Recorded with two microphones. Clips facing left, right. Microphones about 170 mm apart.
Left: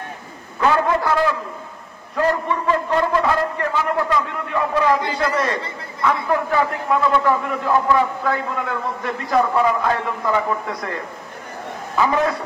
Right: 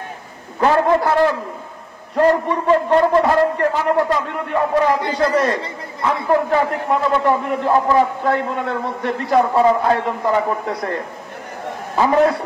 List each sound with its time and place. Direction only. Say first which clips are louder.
0.6 s a man's voice: right 3 dB; 35° right (ahead or behind)